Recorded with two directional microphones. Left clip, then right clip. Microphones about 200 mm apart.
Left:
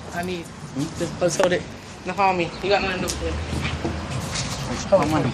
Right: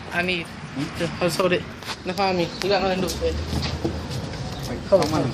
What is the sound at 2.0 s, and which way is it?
Speech, 35° right (ahead or behind).